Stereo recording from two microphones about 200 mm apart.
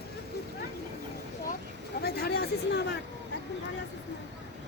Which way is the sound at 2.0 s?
50° left (ahead or behind).